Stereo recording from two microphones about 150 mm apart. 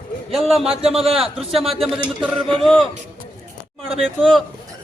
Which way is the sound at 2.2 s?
35° right (ahead or behind).